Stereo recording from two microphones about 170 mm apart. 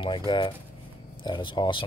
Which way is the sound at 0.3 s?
30° left (ahead or behind).